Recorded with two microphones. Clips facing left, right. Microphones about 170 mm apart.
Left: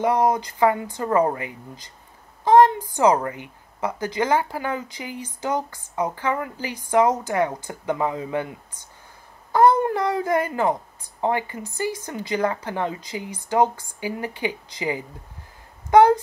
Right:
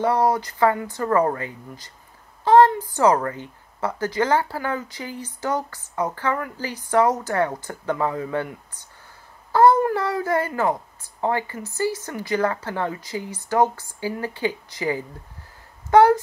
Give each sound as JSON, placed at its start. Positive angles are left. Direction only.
{"t": 0.0, "sound": "speech", "side_deg": 15}
{"t": 9.5, "sound": "speech", "side_deg": 15}